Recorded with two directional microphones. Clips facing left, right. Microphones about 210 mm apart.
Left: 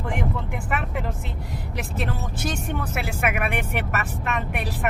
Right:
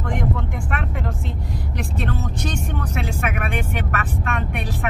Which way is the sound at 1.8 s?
5° left (ahead or behind).